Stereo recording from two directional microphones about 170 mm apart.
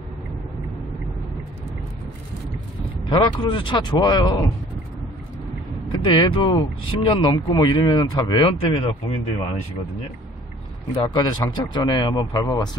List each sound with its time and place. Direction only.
3.1 s speech: 30° left (ahead or behind)
5.9 s speech: 30° left (ahead or behind)
11.0 s speech: 25° left (ahead or behind)